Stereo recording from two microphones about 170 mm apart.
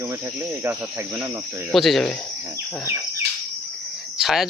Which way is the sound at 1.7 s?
Centre (ahead or behind).